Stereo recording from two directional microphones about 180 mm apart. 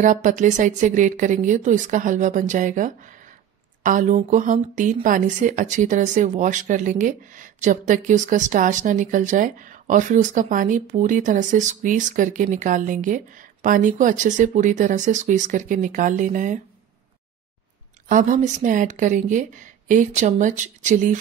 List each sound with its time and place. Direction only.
0.0 s speech: 45° right (ahead or behind)
18.0 s speech: 45° right (ahead or behind)